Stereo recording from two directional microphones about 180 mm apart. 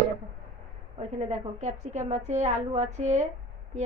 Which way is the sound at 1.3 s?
40° right (ahead or behind).